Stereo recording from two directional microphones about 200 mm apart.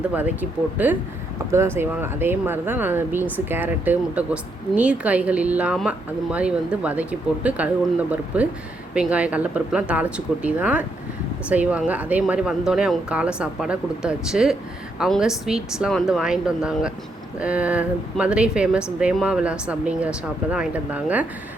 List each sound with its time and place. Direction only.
0.8 s speech: 10° right (ahead or behind)